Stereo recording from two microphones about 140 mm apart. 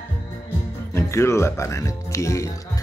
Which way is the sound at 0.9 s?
20° left (ahead or behind).